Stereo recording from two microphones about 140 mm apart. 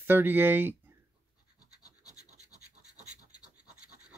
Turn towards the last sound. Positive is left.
turn(degrees=-55)  # may be behind; listen again after turning